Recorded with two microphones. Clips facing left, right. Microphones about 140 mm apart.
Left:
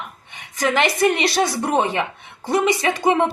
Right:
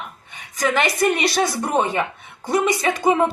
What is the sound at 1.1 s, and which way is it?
Speech, 20° left (ahead or behind).